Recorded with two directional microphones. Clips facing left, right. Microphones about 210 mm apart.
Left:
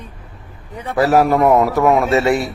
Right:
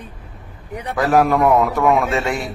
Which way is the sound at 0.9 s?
5° left (ahead or behind).